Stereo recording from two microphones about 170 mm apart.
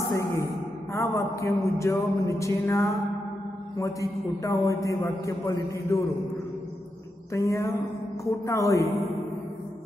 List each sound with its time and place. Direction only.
0.1 s a sound: 15° left (ahead or behind)
0.9 s music: 15° left (ahead or behind)
3.7 s a man's voice: 20° left (ahead or behind)
7.3 s music: 15° left (ahead or behind)